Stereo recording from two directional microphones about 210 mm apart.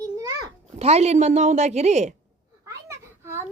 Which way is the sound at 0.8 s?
30° right (ahead or behind).